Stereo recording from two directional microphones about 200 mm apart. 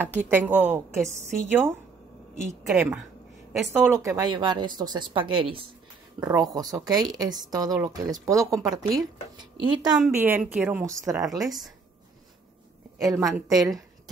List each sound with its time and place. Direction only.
0.3 s a woman's voice: 10° right (ahead or behind)
9.9 s a woman's voice: 5° right (ahead or behind)
11.1 s speech: centre (ahead or behind)
13.0 s a woman's voice: 15° right (ahead or behind)
13.3 s speech: centre (ahead or behind)